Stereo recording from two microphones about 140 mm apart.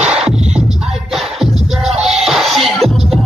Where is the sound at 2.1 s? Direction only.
5° right (ahead or behind).